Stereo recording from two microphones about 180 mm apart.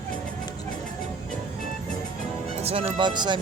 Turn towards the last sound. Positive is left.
turn(degrees=-25)  # may be behind; listen again after turning